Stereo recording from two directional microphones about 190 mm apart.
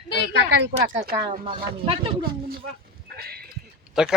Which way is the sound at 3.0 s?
55° right (ahead or behind).